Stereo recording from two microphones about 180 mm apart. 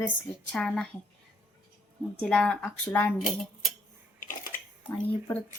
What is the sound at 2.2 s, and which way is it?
Speech, 5° left (ahead or behind).